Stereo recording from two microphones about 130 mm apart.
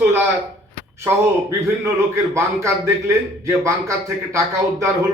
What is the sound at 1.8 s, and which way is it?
A man's voice, 20° right (ahead or behind).